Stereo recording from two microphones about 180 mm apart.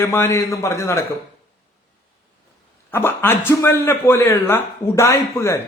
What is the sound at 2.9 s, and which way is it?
A man's voice, 10° left (ahead or behind).